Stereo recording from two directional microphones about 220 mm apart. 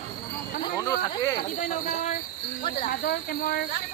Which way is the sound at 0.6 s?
15° left (ahead or behind).